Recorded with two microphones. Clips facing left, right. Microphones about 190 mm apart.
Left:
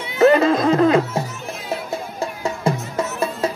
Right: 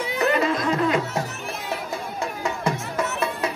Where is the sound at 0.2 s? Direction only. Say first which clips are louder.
Left 9 dB; 40° left (ahead or behind).